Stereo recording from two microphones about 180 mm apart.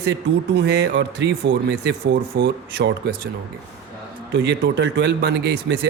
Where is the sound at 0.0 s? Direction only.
70° right (ahead or behind).